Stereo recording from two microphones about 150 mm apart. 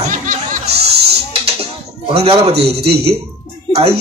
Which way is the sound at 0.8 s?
90° right.